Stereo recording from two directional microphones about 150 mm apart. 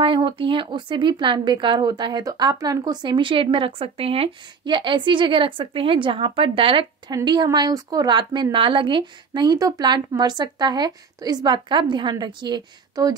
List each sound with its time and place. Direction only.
0.0 s a woman's voice: 35° right (ahead or behind)